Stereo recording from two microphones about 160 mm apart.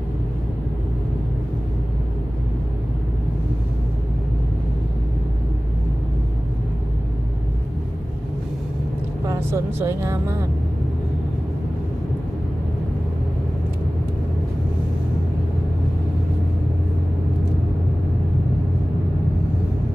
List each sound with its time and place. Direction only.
9.2 s speech: 20° right (ahead or behind)